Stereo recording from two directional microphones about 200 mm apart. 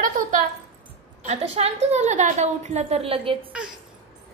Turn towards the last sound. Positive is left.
turn(degrees=-30)  # may be behind; listen again after turning